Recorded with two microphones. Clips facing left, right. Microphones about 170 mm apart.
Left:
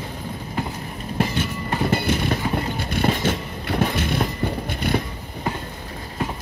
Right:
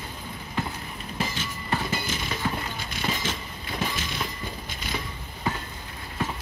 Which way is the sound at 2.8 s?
55° left (ahead or behind).